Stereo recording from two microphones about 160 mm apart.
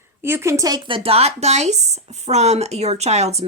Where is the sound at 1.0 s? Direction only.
40° right (ahead or behind).